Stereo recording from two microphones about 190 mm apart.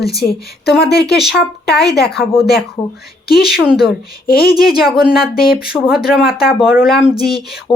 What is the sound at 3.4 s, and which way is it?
Speech, 5° right (ahead or behind).